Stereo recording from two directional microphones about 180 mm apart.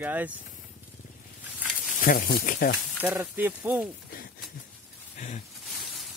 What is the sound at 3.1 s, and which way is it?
Speech, 15° right (ahead or behind).